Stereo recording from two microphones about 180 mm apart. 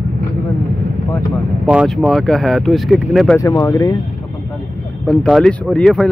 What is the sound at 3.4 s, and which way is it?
Speech, 15° left (ahead or behind).